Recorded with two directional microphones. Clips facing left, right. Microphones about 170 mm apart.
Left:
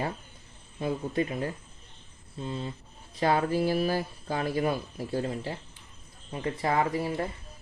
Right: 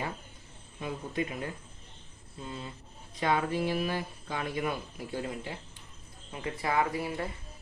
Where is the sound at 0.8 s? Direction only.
35° left (ahead or behind).